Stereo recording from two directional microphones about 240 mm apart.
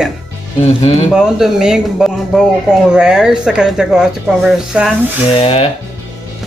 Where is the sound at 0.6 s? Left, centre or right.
Left.